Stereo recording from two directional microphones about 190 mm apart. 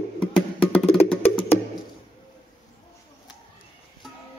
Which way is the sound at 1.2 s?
30° left (ahead or behind).